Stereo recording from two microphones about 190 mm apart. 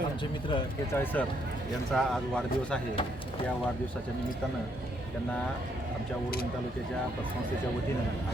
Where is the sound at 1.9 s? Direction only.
Centre (ahead or behind).